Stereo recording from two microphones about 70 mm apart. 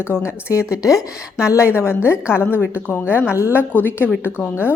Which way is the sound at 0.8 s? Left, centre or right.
Left.